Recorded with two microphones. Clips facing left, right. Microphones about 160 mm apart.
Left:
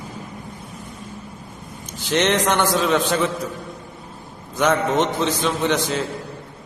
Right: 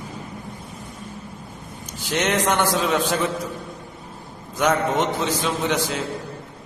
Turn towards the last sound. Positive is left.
turn(degrees=-5)  # may be behind; listen again after turning